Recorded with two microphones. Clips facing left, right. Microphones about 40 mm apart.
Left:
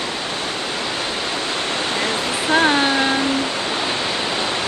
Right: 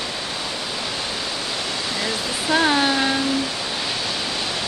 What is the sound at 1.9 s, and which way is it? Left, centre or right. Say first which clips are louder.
Waterfall: left 4 dB; left.